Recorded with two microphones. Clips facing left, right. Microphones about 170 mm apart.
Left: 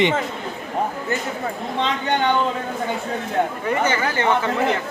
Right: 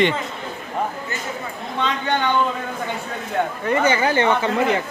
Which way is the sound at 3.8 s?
15° right (ahead or behind).